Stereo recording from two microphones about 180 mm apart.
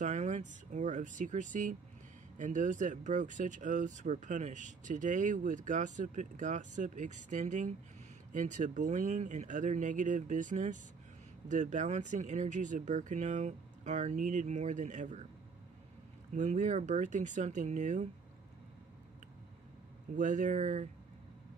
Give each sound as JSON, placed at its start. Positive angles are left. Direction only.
{"t": 0.0, "sound": "speech", "side_deg": -40}
{"t": 16.3, "sound": "speech", "side_deg": -40}
{"t": 20.2, "sound": "speech", "side_deg": -45}